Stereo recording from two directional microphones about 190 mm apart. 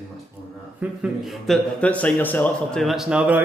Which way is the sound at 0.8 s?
5° right (ahead or behind).